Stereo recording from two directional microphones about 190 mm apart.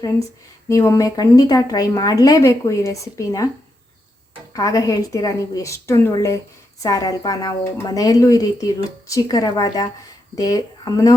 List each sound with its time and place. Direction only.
0.7 s a woman's voice: 15° left (ahead or behind)
4.5 s a woman's voice: 15° left (ahead or behind)